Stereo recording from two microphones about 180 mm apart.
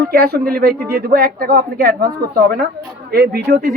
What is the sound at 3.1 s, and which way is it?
Speech, 65° right (ahead or behind).